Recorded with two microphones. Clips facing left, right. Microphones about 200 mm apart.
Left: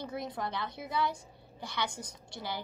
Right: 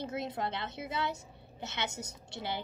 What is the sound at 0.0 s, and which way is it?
A woman's voice, 25° right (ahead or behind).